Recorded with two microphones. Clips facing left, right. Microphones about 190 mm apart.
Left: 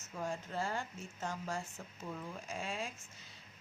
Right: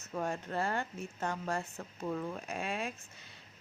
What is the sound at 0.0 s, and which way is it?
A woman's voice, 60° right (ahead or behind).